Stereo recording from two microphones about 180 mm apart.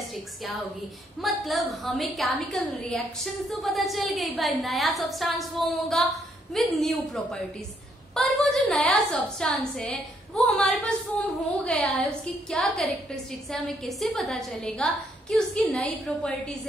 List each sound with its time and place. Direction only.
0.1 s a woman's voice: centre (ahead or behind)